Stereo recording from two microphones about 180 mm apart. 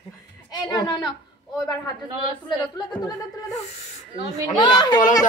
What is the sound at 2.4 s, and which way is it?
A woman's voice, 25° left (ahead or behind).